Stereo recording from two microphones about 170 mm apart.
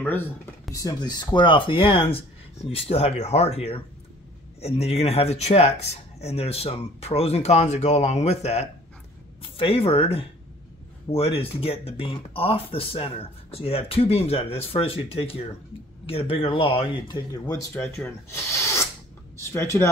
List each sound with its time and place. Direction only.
0.0 s speech: 10° left (ahead or behind)
0.7 s speech: 25° left (ahead or behind)
17.5 s speech: 15° left (ahead or behind)